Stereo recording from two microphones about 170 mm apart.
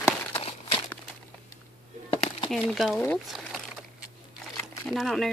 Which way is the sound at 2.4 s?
Centre (ahead or behind).